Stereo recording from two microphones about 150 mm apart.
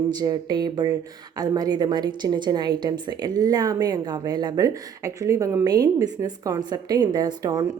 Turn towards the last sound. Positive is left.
turn(degrees=-25)  # may be behind; listen again after turning